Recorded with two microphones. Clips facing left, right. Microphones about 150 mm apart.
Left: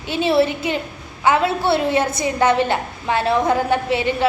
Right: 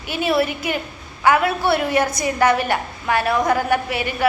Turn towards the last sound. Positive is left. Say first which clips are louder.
# left 3 dB
turn(degrees=25)  # may be behind; listen again after turning